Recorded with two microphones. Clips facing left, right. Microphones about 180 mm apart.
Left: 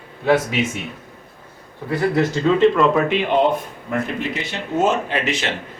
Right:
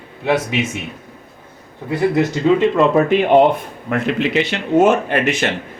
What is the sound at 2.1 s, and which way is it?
Speech, 20° right (ahead or behind).